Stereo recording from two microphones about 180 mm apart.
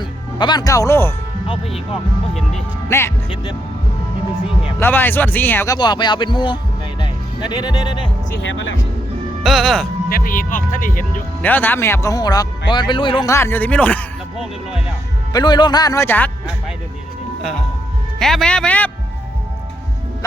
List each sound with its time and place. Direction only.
0.3 s speech: 25° left (ahead or behind)
2.9 s speech: 15° left (ahead or behind)
4.8 s speech: 10° left (ahead or behind)
7.6 s speech: 25° left (ahead or behind)
9.4 s speech: centre (ahead or behind)
10.1 s speech: 50° left (ahead or behind)
11.4 s speech: 10° left (ahead or behind); by 13.2 s 30° left (ahead or behind)
13.2 s speech: 15° left (ahead or behind)
15.3 s speech: 25° left (ahead or behind)
18.2 s speech: centre (ahead or behind)